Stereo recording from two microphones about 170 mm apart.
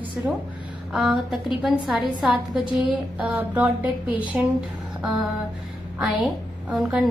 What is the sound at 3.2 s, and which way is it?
Speech, 5° right (ahead or behind).